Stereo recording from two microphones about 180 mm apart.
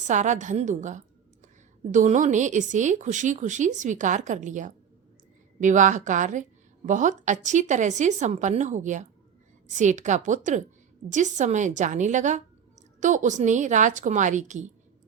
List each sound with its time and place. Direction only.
0.1 s a woman's voice: 45° right (ahead or behind)